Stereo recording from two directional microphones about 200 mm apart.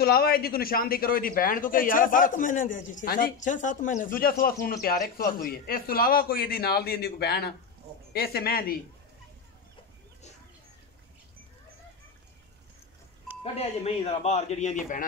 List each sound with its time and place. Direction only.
0.0 s a man's voice: 50° left (ahead or behind)
13.4 s speech: 30° left (ahead or behind)